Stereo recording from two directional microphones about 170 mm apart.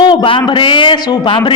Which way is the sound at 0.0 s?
25° left (ahead or behind).